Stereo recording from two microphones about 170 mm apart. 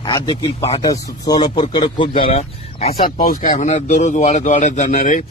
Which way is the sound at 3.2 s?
55° left (ahead or behind).